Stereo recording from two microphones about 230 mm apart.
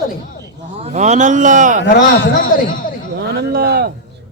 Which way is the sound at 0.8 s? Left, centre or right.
Right.